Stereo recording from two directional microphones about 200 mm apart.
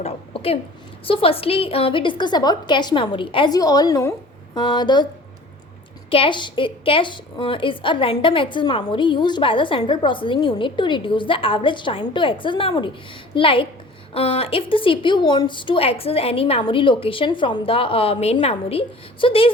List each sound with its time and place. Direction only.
0.0 s a woman's voice: 30° left (ahead or behind)
6.1 s a woman's voice: 25° left (ahead or behind)